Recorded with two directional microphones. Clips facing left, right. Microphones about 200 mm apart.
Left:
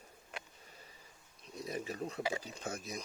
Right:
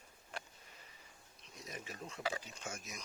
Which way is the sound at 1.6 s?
35° left (ahead or behind).